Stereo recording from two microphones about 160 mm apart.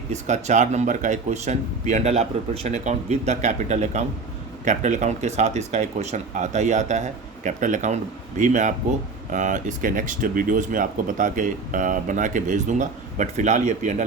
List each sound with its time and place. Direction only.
0.1 s a man's voice: 45° right (ahead or behind)